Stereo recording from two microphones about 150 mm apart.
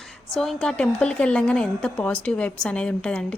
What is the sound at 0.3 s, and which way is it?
A woman's voice, 5° left (ahead or behind).